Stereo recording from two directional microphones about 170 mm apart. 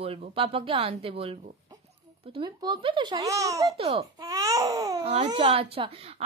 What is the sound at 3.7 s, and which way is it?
Speech, 35° right (ahead or behind).